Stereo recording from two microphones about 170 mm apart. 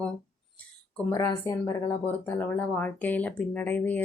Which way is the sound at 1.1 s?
20° left (ahead or behind).